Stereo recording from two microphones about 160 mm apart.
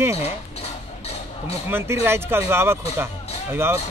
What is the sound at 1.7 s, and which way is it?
Speech, 15° right (ahead or behind).